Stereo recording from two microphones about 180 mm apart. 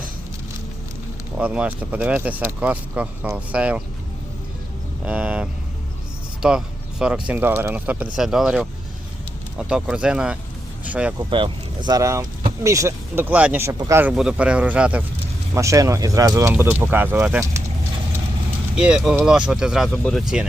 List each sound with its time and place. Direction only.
1.4 s speech: 10° right (ahead or behind)
5.0 s speech: 5° right (ahead or behind)
11.2 s speech: 25° right (ahead or behind); by 17.6 s 10° right (ahead or behind)
18.8 s speech: 5° right (ahead or behind)